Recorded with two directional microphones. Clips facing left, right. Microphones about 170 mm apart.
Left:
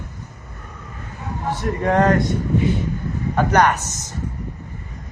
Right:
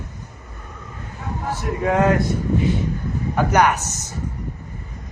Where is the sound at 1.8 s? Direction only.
5° right (ahead or behind).